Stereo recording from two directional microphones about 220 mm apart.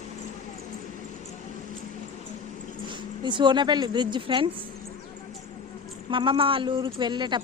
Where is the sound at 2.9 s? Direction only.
20° right (ahead or behind).